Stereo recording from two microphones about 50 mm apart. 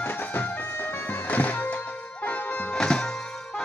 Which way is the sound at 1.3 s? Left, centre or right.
Left.